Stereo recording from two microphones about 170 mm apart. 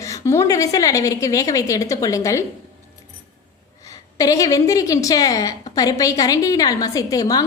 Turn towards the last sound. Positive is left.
turn(degrees=20)  # may be behind; listen again after turning